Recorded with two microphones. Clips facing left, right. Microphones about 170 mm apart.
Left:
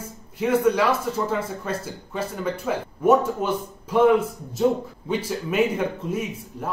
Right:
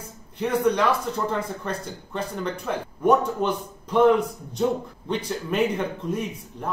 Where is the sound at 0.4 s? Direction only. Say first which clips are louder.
Left 2 dB; 5° left (ahead or behind).